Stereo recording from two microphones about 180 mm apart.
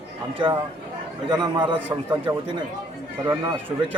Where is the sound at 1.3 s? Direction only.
25° right (ahead or behind).